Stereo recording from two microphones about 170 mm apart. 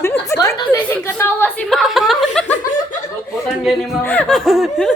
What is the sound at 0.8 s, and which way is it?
Chuckle, 10° left (ahead or behind).